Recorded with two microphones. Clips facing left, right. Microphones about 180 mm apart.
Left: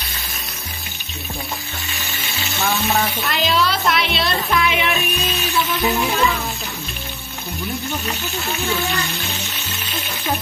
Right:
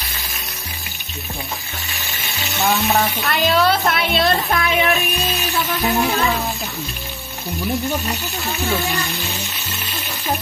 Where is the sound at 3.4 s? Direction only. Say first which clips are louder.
Right 3 dB; 50° right (ahead or behind).